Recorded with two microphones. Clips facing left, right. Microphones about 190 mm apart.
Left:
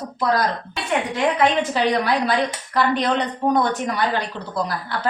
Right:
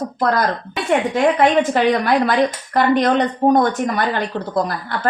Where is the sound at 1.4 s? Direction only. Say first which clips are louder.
Right 3 dB; 50° right (ahead or behind).